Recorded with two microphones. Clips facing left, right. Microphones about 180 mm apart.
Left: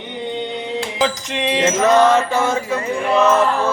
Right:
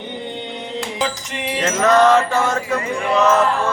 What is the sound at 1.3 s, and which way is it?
Music, 85° left.